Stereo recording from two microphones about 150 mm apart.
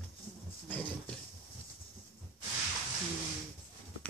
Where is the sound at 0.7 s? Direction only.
10° left (ahead or behind).